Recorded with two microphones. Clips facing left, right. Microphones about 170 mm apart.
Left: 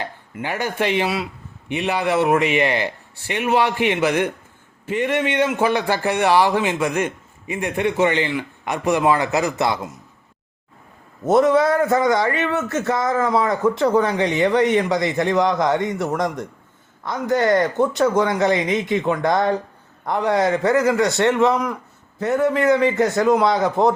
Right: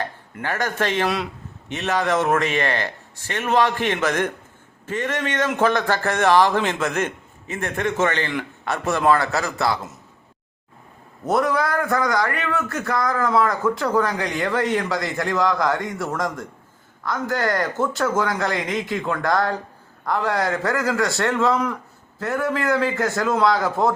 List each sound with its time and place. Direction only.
0.0 s a man's voice: 15° left (ahead or behind)
11.3 s speech: 25° left (ahead or behind)